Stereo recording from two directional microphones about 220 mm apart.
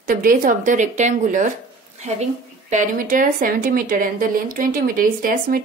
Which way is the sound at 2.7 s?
35° right (ahead or behind).